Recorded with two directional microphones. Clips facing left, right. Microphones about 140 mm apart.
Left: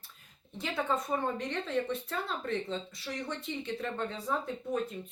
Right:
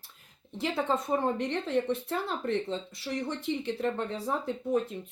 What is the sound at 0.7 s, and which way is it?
Speech, 30° right (ahead or behind).